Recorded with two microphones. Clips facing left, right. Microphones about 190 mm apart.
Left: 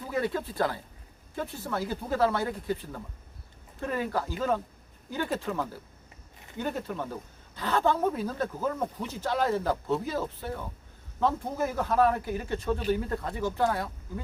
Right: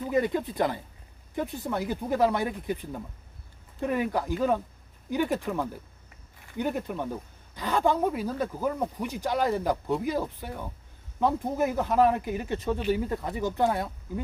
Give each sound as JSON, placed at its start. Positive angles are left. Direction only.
{"t": 0.0, "sound": "speech", "side_deg": -20}